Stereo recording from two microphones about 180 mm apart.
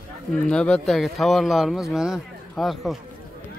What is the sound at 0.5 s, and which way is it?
Speech, 5° left (ahead or behind).